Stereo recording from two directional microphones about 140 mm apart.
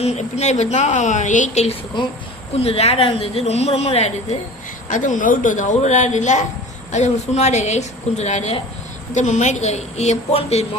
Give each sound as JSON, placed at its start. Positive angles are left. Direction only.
{"t": 0.0, "sound": "a woman's voice", "side_deg": 50}
{"t": 2.6, "sound": "a woman's voice", "side_deg": 45}
{"t": 4.9, "sound": "a woman's voice", "side_deg": 65}